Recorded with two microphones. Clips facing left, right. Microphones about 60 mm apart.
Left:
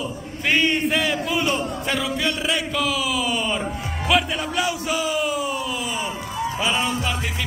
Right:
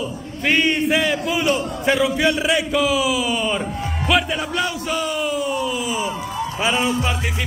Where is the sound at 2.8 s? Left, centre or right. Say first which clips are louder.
Right 4 dB; centre.